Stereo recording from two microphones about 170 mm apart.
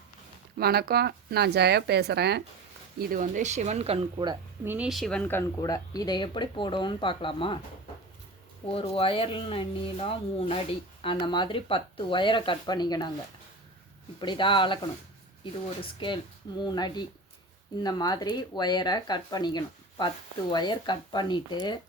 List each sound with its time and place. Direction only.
0.6 s speech: 65° right (ahead or behind)
3.0 s speech: 50° right (ahead or behind); by 4.4 s 30° right (ahead or behind)
4.6 s speech: 10° right (ahead or behind)
4.9 s speech: centre (ahead or behind); by 7.6 s 30° left (ahead or behind)
8.7 s speech: 35° left (ahead or behind)
14.2 s speech: 30° left (ahead or behind)
15.8 s speech: 30° left (ahead or behind)